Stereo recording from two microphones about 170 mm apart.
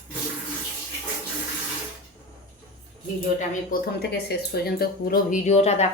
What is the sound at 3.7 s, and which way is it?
Speech, 70° left (ahead or behind).